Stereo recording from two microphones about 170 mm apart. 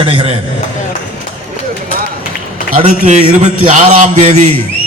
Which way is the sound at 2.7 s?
40° right (ahead or behind).